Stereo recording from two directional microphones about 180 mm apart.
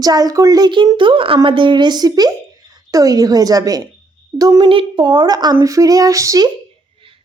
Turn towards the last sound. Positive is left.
turn(degrees=-20)  # may be behind; listen again after turning